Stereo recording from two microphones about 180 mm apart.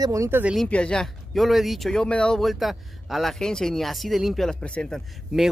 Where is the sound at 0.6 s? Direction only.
5° left (ahead or behind).